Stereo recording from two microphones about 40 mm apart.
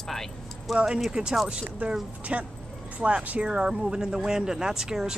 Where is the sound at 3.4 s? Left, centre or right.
Right.